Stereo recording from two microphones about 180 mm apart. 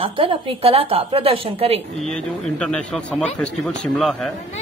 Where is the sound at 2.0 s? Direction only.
Centre (ahead or behind).